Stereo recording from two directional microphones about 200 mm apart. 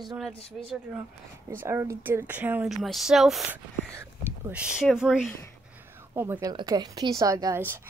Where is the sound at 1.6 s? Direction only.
15° right (ahead or behind).